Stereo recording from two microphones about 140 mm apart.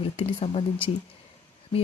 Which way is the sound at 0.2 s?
50° left (ahead or behind).